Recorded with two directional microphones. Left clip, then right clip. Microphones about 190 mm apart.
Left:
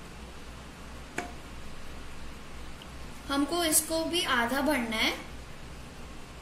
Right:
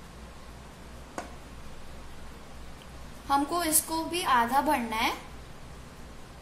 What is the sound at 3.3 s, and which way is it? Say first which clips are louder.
A woman's voice: right 2 dB; 60° right (ahead or behind).